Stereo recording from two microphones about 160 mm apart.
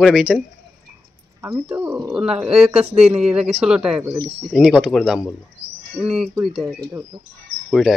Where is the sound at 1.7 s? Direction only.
15° right (ahead or behind).